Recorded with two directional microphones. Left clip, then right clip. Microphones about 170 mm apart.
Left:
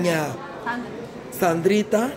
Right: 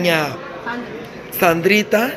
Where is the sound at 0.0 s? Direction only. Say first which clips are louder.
Right 6 dB; 15° left (ahead or behind).